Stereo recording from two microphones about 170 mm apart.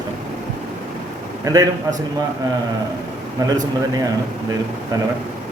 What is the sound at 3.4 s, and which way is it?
Speech, 20° right (ahead or behind).